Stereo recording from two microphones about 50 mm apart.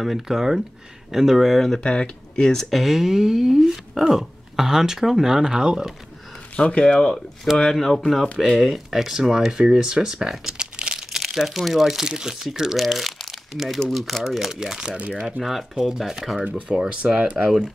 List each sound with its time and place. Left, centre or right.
0.0 s speech: centre
1.6 s speech: centre
6.5 s speech: left
7.7 s speech: centre
11.1 s speech: centre
12.8 s crumpling: centre
13.7 s speech: centre
15.0 s speech: right
15.7 s speech: centre
16.6 s speech: centre